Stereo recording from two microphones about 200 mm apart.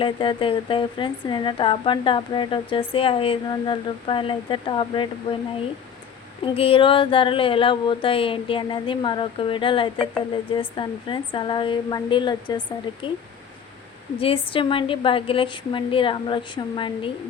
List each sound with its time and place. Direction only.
0.0 s a woman's voice: 25° left (ahead or behind)
6.4 s a woman's voice: 25° left (ahead or behind)
14.2 s a woman's voice: 25° left (ahead or behind)